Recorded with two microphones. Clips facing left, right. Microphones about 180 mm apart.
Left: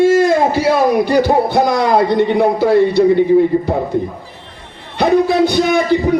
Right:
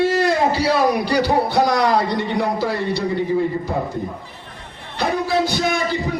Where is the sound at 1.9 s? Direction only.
55° left (ahead or behind).